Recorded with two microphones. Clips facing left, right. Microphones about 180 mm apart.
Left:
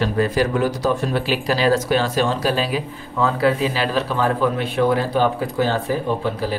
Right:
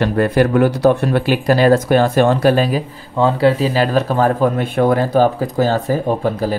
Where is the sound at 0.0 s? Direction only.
60° right (ahead or behind).